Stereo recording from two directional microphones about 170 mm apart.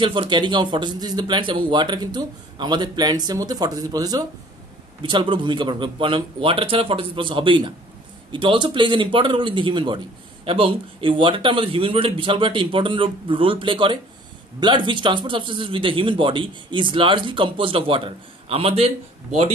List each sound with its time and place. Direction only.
0.0 s speech: 30° right (ahead or behind)